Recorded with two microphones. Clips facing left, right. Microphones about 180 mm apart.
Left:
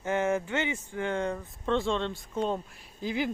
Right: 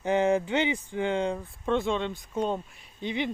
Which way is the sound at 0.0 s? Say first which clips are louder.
Right 4 dB; 15° right (ahead or behind).